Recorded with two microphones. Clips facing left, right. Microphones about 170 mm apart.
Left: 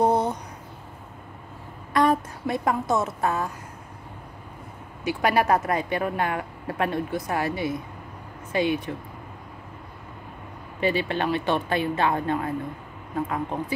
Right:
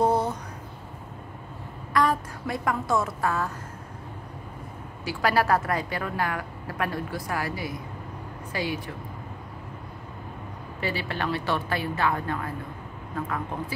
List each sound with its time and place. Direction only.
0.0 s a sound: 20° left (ahead or behind)
2.0 s a woman's voice: 20° left (ahead or behind)
5.0 s a woman's voice: 20° left (ahead or behind)
10.8 s a woman's voice: 20° left (ahead or behind)